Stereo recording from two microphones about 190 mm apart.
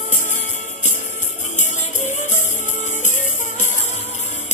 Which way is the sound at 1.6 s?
40° left (ahead or behind).